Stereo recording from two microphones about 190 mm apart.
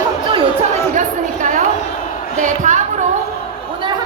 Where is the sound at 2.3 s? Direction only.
40° right (ahead or behind).